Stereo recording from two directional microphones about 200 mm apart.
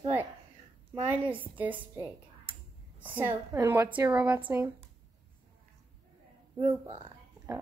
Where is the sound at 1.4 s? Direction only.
10° right (ahead or behind).